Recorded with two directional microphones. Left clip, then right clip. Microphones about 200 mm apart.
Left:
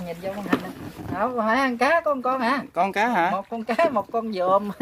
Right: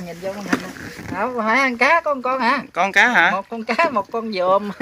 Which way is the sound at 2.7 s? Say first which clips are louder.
Right 8 dB; 15° left (ahead or behind).